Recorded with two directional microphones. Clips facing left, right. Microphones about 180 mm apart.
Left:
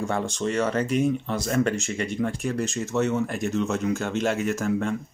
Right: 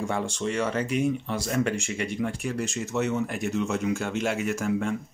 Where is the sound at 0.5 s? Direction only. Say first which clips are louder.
Left 3 dB; 45° left (ahead or behind).